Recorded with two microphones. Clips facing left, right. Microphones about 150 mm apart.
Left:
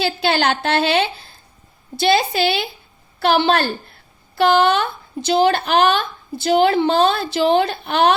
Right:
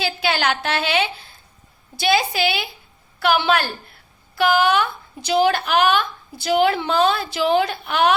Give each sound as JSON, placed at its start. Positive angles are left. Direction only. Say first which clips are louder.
{"t": 0.0, "sound": "a woman's voice", "louder": "left 3 dB", "side_deg": 30}